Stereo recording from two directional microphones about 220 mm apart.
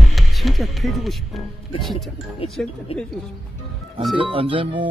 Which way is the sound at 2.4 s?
25° left (ahead or behind).